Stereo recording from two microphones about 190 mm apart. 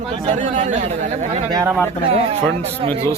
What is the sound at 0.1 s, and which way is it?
Speech, 35° right (ahead or behind).